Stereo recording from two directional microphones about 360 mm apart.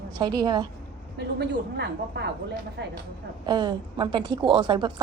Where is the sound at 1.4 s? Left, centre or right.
Right.